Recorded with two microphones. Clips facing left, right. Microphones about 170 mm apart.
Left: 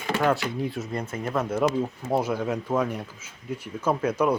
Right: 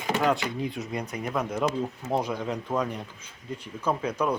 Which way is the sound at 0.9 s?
15° right (ahead or behind).